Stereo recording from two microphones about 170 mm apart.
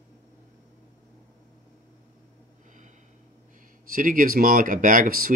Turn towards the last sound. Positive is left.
turn(degrees=-55)  # may be behind; listen again after turning